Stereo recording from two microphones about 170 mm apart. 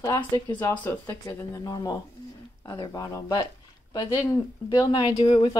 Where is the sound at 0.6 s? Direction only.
10° left (ahead or behind).